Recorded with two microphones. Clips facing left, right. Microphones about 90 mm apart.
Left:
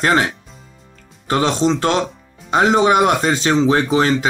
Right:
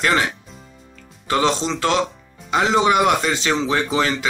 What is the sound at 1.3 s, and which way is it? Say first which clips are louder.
Speech: left 3 dB; 40° left (ahead or behind).